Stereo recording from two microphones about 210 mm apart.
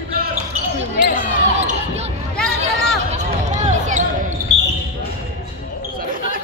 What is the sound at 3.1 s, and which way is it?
Basketball bounce, 35° right (ahead or behind).